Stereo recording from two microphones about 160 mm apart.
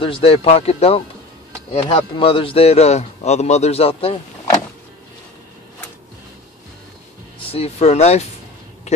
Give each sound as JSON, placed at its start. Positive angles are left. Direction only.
{"t": 0.0, "sound": "a man's voice", "side_deg": 35}
{"t": 7.5, "sound": "speech", "side_deg": 40}